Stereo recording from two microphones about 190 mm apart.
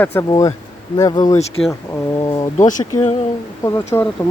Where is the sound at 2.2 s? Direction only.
20° left (ahead or behind).